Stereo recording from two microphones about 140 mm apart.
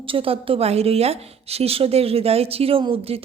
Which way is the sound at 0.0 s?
40° right (ahead or behind).